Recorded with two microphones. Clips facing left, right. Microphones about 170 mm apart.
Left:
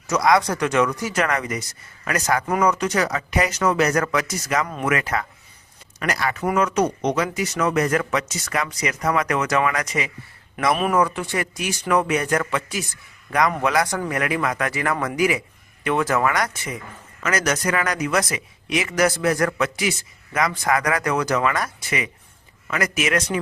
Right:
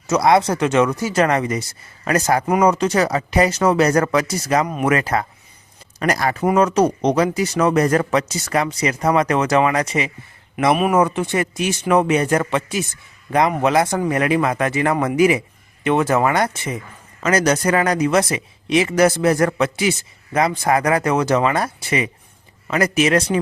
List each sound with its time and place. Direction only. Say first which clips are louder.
0.1 s speech: right 3 dB; 25° right (ahead or behind)
4.6 s speech: right 5 dB; 20° right (ahead or behind)
4.9 s speech: right 4 dB; 30° right (ahead or behind)